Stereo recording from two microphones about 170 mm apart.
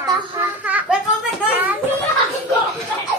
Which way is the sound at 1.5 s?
10° right (ahead or behind).